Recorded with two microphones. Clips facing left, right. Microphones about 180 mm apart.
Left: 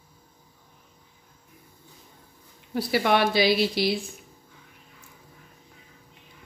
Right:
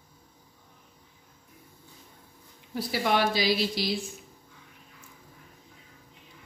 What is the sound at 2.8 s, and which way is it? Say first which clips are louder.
Speech: left 4 dB; 65° left (ahead or behind).